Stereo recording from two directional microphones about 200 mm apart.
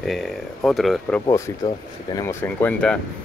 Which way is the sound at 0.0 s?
Centre (ahead or behind).